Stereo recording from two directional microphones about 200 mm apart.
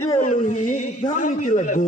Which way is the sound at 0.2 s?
40° left (ahead or behind).